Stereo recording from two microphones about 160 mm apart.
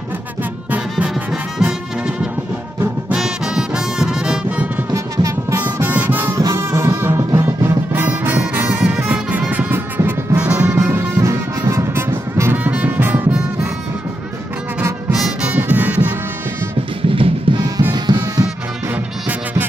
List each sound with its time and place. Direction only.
0.7 s brass instrument: 5° right (ahead or behind)
2.8 s music: 5° right (ahead or behind)
4.9 s music: 20° right (ahead or behind)
15.1 s music: 5° right (ahead or behind)
17.1 s music: 35° right (ahead or behind)